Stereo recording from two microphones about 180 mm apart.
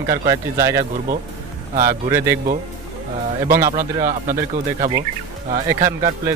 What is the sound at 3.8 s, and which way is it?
Speech, 50° right (ahead or behind).